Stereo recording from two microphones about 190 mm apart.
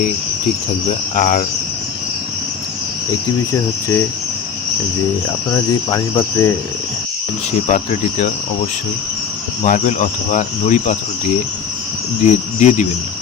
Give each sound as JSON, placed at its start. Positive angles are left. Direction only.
{"t": 1.1, "sound": "speech", "side_deg": 45}
{"t": 3.5, "sound": "cricket", "side_deg": 15}
{"t": 5.9, "sound": "speech", "side_deg": 25}
{"t": 7.7, "sound": "speech", "side_deg": 40}
{"t": 9.6, "sound": "speech", "side_deg": 40}
{"t": 12.2, "sound": "speech", "side_deg": 40}